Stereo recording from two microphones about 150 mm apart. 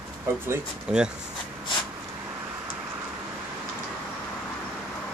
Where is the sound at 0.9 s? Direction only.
5° right (ahead or behind).